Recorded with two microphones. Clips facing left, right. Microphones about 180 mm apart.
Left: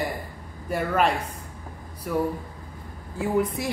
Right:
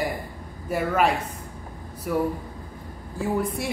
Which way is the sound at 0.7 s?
5° right (ahead or behind).